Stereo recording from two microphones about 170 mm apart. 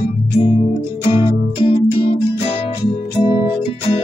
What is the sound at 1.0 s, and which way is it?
Music, 30° left (ahead or behind).